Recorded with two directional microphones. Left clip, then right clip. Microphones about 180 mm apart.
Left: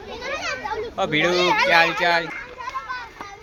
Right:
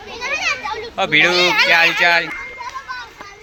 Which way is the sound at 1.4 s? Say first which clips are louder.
Right 4 dB; 45° left (ahead or behind).